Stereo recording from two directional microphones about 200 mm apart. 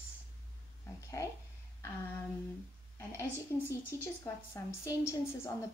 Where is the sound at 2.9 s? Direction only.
10° left (ahead or behind).